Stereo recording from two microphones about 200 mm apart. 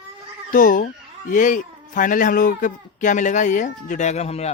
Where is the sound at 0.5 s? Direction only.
45° left (ahead or behind).